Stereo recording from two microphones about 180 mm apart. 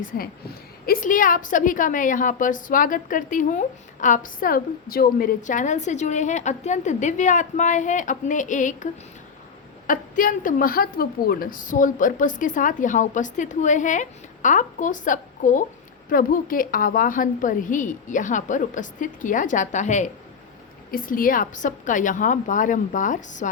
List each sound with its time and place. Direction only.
0.0 s a woman's voice: 55° left (ahead or behind)